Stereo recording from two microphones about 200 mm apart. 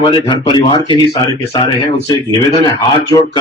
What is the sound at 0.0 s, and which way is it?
A man's voice, 25° left (ahead or behind).